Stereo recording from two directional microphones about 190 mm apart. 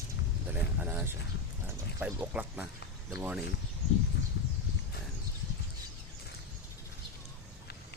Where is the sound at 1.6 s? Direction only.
10° right (ahead or behind).